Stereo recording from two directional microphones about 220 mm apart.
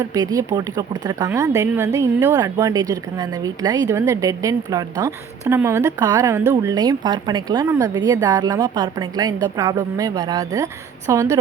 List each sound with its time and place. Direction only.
0.0 s speech: 15° right (ahead or behind)